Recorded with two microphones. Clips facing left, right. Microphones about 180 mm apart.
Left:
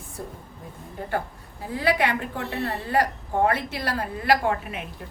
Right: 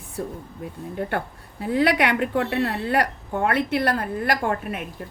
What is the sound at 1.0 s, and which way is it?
A woman's voice, 65° right (ahead or behind).